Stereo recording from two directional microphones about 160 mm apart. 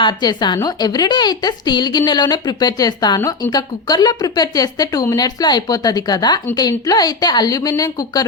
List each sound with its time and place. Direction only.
0.0 s speech: 25° left (ahead or behind)